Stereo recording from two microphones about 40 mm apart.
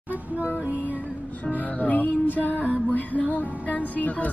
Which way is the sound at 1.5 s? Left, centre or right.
Left.